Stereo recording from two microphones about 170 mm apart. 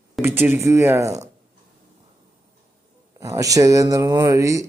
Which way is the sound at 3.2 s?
20° right (ahead or behind).